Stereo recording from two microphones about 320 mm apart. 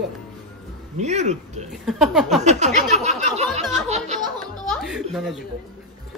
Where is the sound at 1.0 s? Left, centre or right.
Right.